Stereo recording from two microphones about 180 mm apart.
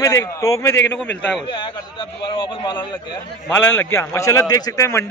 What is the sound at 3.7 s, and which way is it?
Speech, 90° left.